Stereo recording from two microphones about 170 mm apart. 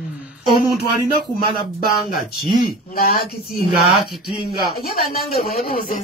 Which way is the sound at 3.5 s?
Centre (ahead or behind).